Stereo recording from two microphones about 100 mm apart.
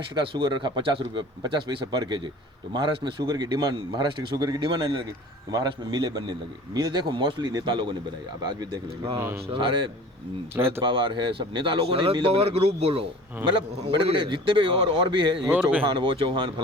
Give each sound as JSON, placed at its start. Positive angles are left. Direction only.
{"t": 0.1, "sound": "speech", "side_deg": -55}
{"t": 1.4, "sound": "a man's voice", "side_deg": -50}
{"t": 9.1, "sound": "speech", "side_deg": -25}
{"t": 9.5, "sound": "speech", "side_deg": -55}
{"t": 10.5, "sound": "speech", "side_deg": -25}
{"t": 10.8, "sound": "speech", "side_deg": -50}
{"t": 13.8, "sound": "speech", "side_deg": -65}
{"t": 15.4, "sound": "speech", "side_deg": -15}
{"t": 15.8, "sound": "speech", "side_deg": -55}